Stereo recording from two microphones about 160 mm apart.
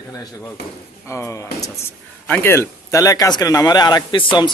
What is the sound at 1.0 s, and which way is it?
Speech, 15° left (ahead or behind).